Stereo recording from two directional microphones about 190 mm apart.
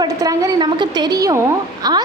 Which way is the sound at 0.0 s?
20° right (ahead or behind).